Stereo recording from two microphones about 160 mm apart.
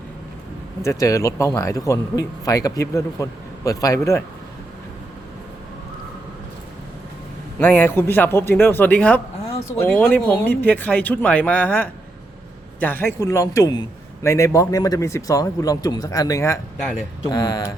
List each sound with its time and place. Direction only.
0.8 s a man's voice: 20° left (ahead or behind)
7.6 s a man's voice: 15° left (ahead or behind)